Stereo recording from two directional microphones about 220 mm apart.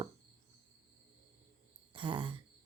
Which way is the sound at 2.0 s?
20° right (ahead or behind).